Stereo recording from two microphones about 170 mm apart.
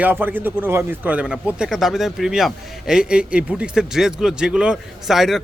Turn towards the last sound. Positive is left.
turn(degrees=0)  # may be behind; listen again after turning